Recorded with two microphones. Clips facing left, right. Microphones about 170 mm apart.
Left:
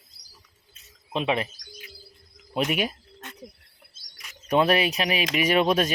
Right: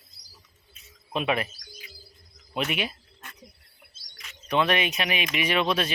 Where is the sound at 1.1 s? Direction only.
25° left (ahead or behind).